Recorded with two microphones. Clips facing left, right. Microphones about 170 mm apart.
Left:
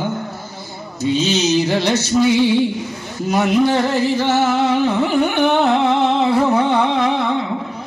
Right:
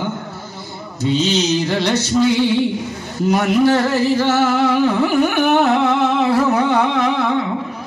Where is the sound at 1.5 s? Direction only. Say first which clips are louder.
Left 1 dB; 10° left (ahead or behind).